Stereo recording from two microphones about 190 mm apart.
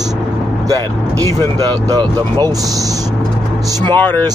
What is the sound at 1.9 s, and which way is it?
Speech, 20° right (ahead or behind).